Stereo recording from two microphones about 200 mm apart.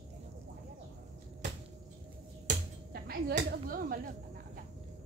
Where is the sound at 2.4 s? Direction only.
50° right (ahead or behind).